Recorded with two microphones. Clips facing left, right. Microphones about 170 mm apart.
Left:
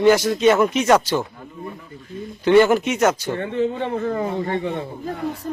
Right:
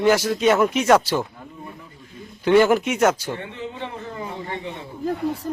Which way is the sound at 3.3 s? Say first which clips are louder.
Left 10 dB; 50° left (ahead or behind).